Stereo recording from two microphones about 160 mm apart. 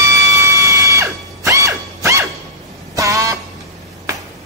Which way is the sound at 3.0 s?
20° right (ahead or behind).